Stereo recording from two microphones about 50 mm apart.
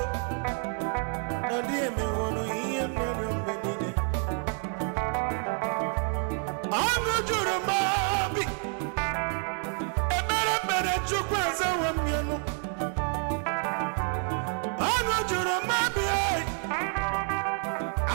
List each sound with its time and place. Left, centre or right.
0.8 s music: right
5.0 s music: right
10.1 s music: centre